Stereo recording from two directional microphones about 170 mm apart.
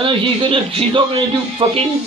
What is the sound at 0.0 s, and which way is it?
A man's voice, 30° right (ahead or behind).